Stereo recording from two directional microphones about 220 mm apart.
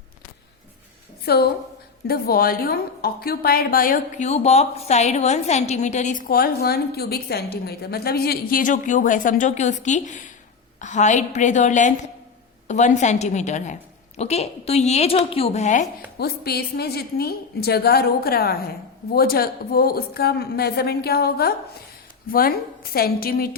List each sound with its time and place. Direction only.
1.2 s a woman's voice: 45° left (ahead or behind)
16.1 s a woman's voice: 45° left (ahead or behind)